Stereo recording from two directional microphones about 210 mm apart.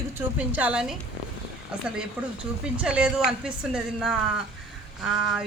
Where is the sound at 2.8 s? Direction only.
5° right (ahead or behind).